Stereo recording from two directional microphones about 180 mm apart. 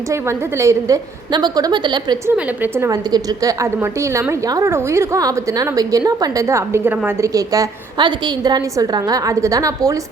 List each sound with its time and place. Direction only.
0.1 s a woman's voice: 15° right (ahead or behind)
2.3 s a woman's voice: 10° right (ahead or behind)